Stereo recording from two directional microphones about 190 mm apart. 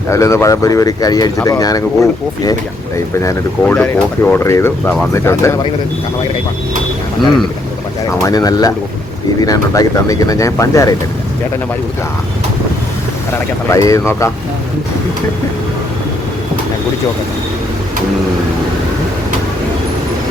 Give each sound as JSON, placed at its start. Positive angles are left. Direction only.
{"t": 0.1, "sound": "speech", "side_deg": 15}
{"t": 8.2, "sound": "speech", "side_deg": 20}
{"t": 13.7, "sound": "speech", "side_deg": 15}